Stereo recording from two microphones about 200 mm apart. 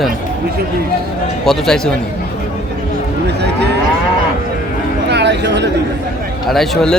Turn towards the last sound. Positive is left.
turn(degrees=0)  # may be behind; listen again after turning